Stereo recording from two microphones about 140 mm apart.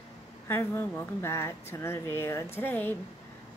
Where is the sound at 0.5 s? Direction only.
15° left (ahead or behind).